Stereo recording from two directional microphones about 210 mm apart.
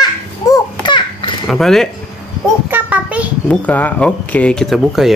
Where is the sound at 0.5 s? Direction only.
20° left (ahead or behind).